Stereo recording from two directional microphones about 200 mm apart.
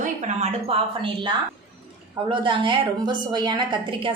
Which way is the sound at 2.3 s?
25° right (ahead or behind).